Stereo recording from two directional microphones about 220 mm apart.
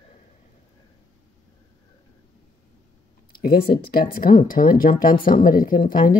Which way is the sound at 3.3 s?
40° left (ahead or behind).